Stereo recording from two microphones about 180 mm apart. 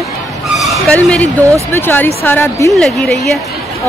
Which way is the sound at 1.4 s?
15° right (ahead or behind).